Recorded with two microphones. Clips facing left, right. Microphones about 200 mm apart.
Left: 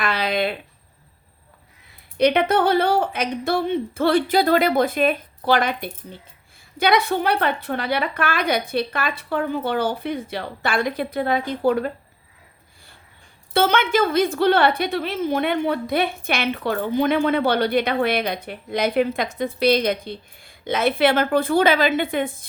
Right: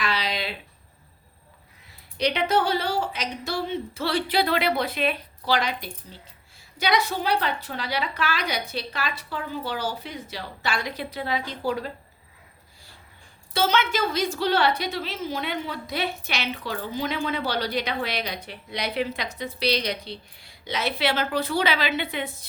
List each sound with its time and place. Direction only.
0.0 s a sound: 55° left (ahead or behind)
2.1 s a woman's voice: 55° left (ahead or behind)
13.5 s a woman's voice: 55° left (ahead or behind)